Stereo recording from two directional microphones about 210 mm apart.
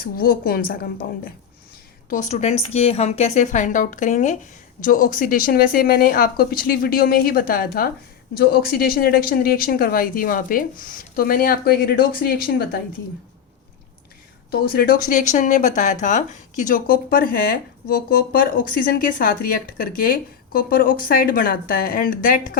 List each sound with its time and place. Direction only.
0.0 s speech: 45° left (ahead or behind)
14.5 s speech: 45° left (ahead or behind)